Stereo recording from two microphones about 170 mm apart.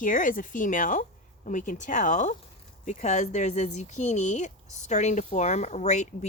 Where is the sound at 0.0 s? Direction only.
50° left (ahead or behind).